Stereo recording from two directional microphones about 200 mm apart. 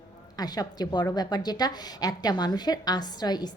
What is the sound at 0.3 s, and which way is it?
A woman's voice, 20° left (ahead or behind).